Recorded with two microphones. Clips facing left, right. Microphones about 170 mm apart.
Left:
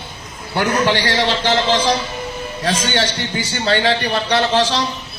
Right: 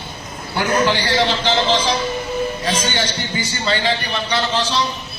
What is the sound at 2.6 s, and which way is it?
A man's voice, 70° left (ahead or behind).